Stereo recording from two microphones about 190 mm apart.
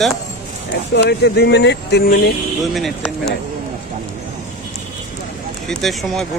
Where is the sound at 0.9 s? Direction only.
65° left (ahead or behind).